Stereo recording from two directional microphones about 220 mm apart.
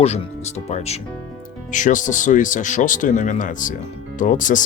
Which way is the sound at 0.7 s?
30° left (ahead or behind).